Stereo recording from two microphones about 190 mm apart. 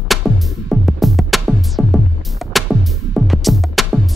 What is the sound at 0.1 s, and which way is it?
Music, centre (ahead or behind).